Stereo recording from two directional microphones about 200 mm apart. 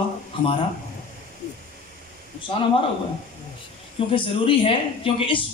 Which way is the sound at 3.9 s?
25° left (ahead or behind).